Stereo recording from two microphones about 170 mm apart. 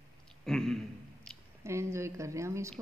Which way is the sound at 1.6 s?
15° right (ahead or behind).